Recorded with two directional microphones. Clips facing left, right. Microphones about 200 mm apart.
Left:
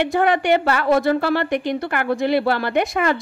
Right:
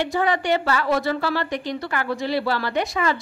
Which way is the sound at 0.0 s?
55° left (ahead or behind).